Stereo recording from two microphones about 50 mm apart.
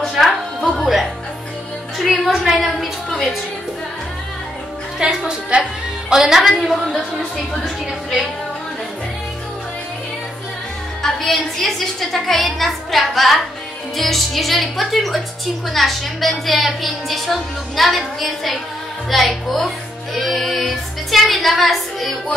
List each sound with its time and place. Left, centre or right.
0.2 s music: centre
2.0 s a woman's voice: centre
3.1 s a sound: centre
4.9 s a woman's voice: centre
11.0 s a woman's voice: centre